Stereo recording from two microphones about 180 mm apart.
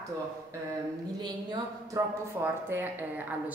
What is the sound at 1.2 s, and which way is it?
A woman's voice, 20° right (ahead or behind).